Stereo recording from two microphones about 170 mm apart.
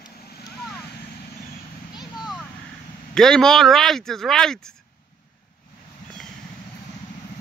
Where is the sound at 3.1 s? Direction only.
5° left (ahead or behind).